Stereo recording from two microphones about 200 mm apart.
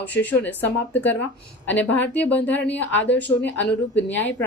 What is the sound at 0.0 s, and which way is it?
Speech, 10° left (ahead or behind).